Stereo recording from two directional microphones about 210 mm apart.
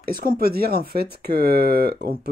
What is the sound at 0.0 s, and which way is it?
Speech, 45° right (ahead or behind).